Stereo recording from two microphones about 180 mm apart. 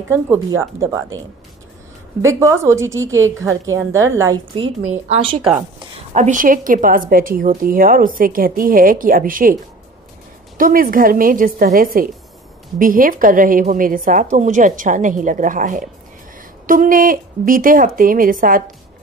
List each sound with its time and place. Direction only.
0.1 s a woman's voice: 15° right (ahead or behind)
2.2 s a woman's voice: 15° right (ahead or behind)
4.6 s speech: 40° right (ahead or behind)
6.1 s a woman's voice: 45° right (ahead or behind)
10.6 s a woman's voice: 50° right (ahead or behind)